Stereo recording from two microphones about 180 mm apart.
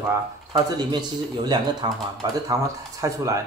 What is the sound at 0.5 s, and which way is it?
Speech, 20° right (ahead or behind).